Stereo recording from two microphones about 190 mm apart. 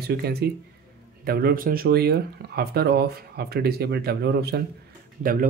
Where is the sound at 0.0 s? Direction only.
55° right (ahead or behind).